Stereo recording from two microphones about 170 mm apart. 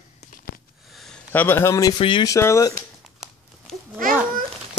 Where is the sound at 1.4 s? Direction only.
15° left (ahead or behind).